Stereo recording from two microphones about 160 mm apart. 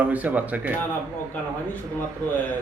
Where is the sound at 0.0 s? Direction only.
10° right (ahead or behind).